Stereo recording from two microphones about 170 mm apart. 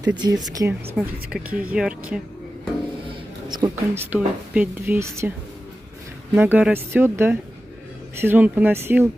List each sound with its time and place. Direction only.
0.0 s speech: 25° right (ahead or behind)
0.9 s speech: 5° right (ahead or behind)
3.1 s a sound: 25° right (ahead or behind)
3.9 s a woman's voice: 10° right (ahead or behind)
6.3 s a woman's voice: 10° right (ahead or behind)